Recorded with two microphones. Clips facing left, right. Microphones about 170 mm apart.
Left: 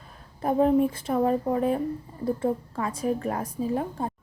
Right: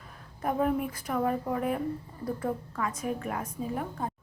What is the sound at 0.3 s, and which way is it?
A woman's voice, 30° left (ahead or behind).